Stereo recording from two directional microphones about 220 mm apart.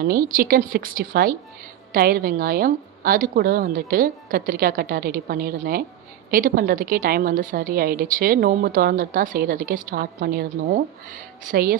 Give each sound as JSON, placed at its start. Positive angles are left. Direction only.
{"t": 0.0, "sound": "a woman's voice", "side_deg": -45}